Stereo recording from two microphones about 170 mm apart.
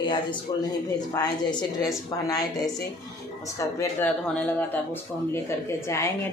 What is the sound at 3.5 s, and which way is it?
A woman's voice, 20° left (ahead or behind).